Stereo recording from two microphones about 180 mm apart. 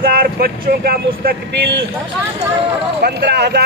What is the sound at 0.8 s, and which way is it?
Speech, 55° right (ahead or behind).